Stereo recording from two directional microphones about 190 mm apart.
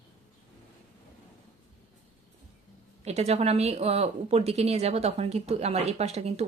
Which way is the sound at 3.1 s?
35° right (ahead or behind).